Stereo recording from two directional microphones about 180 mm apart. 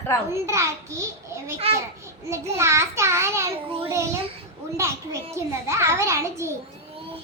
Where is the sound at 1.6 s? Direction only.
35° right (ahead or behind).